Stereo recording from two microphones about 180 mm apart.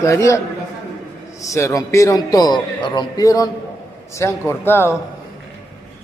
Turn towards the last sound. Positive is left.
turn(degrees=15)  # may be behind; listen again after turning